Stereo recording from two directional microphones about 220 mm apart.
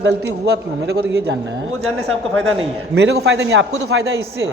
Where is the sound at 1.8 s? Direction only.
70° right (ahead or behind).